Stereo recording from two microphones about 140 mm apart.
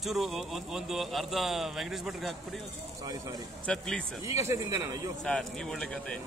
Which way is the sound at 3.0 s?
25° right (ahead or behind).